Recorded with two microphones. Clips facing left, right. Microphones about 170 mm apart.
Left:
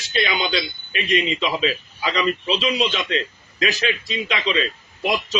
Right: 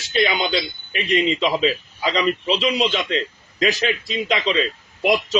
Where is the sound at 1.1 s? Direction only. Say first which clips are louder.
Right 3 dB; 25° right (ahead or behind).